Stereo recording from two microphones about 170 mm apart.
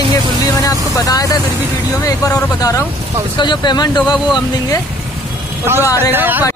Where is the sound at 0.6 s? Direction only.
20° left (ahead or behind).